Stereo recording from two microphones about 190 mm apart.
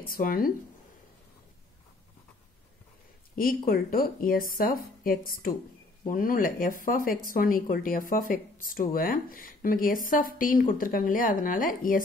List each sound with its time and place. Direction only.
0.0 s speech: 50° left (ahead or behind)
3.3 s speech: 50° left (ahead or behind)